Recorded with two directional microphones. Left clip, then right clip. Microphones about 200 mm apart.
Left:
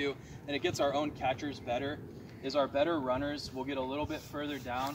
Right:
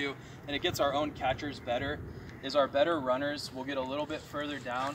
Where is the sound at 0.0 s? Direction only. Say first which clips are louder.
Even; 5° right (ahead or behind).